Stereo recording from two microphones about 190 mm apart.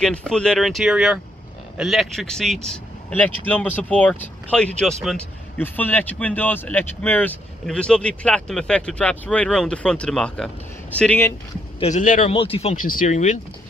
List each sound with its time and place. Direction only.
0.0 s speech: 5° left (ahead or behind)
11.8 s speech: 40° left (ahead or behind)
12.7 s speech: 45° left (ahead or behind)